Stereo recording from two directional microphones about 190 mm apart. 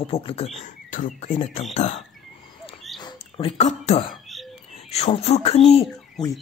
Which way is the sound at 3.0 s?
30° left (ahead or behind).